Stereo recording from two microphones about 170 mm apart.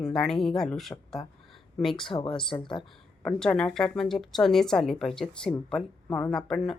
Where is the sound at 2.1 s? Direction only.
30° left (ahead or behind).